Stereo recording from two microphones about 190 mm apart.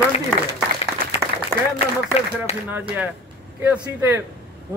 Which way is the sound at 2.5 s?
35° left (ahead or behind).